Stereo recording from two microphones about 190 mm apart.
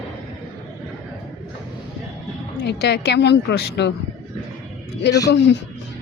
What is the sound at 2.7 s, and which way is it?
Speech, 60° left (ahead or behind).